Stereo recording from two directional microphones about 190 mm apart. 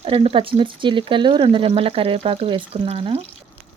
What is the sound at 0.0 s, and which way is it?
Speech, 30° right (ahead or behind).